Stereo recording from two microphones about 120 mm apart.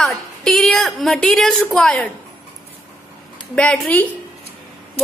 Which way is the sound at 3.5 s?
5° left (ahead or behind).